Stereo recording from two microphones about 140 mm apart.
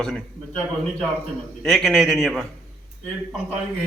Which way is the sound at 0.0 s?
5° left (ahead or behind).